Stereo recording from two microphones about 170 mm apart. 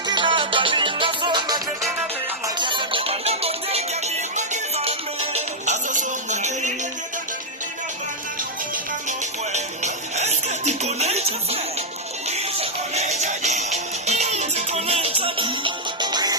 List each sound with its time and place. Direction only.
0.1 s music: 30° right (ahead or behind); by 6.7 s 45° right (ahead or behind)
9.0 s music: 40° right (ahead or behind); by 16.3 s 25° right (ahead or behind)